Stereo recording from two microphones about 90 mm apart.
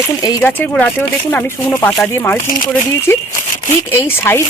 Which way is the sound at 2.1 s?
20° left (ahead or behind).